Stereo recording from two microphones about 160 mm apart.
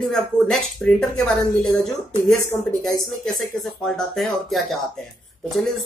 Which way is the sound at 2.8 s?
Centre (ahead or behind).